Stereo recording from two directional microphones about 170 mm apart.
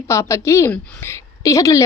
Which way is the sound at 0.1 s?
15° left (ahead or behind).